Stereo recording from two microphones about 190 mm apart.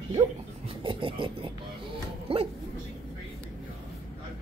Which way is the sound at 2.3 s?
30° right (ahead or behind).